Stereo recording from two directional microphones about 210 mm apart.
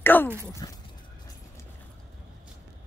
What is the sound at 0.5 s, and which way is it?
Speech, 15° left (ahead or behind).